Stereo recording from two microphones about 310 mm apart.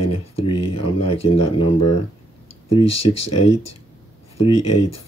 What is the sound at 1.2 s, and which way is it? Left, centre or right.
Speech, left.